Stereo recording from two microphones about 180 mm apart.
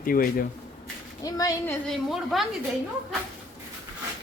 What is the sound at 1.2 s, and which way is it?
Speech, 20° left (ahead or behind).